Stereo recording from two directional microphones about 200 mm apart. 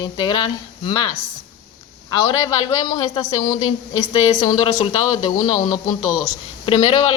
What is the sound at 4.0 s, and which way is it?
Speech, 15° left (ahead or behind).